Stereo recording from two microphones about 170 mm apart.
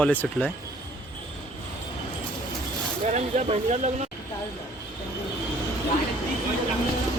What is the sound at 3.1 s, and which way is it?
Speech, 40° right (ahead or behind).